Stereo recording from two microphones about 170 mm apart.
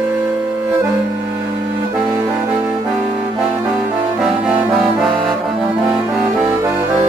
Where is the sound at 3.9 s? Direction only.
5° right (ahead or behind).